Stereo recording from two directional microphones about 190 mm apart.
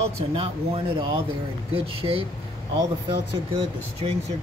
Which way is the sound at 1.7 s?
30° right (ahead or behind).